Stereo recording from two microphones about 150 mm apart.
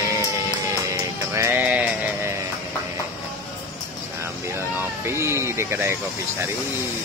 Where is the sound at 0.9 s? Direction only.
20° right (ahead or behind).